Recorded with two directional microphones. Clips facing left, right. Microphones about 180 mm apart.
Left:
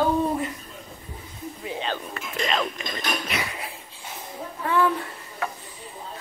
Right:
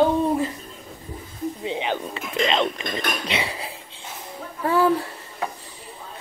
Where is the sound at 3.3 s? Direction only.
30° right (ahead or behind).